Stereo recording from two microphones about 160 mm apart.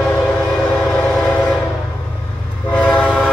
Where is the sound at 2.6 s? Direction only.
5° left (ahead or behind).